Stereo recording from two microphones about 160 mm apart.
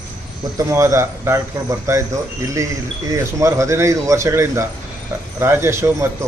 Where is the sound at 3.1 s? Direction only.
20° right (ahead or behind).